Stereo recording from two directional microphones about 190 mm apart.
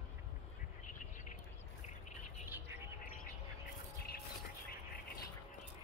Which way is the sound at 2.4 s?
10° right (ahead or behind).